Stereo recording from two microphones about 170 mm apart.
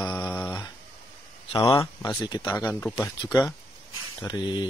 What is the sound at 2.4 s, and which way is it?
Speech, 15° left (ahead or behind).